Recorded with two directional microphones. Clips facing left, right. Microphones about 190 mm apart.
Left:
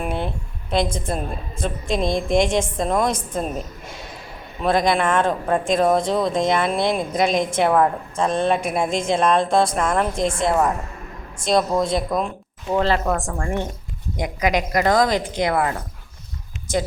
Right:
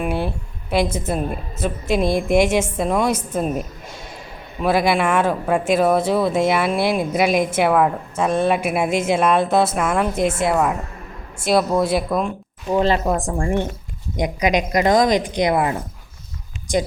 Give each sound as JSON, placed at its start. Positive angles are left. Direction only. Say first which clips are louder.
{"t": 0.0, "sound": "a sound", "louder": "right 3 dB", "side_deg": -5}
{"t": 0.7, "sound": "speech", "louder": "right 2 dB", "side_deg": -5}
{"t": 4.6, "sound": "speech", "louder": "right 1 dB", "side_deg": -5}
{"t": 12.7, "sound": "a woman's voice", "louder": "right 2 dB", "side_deg": -15}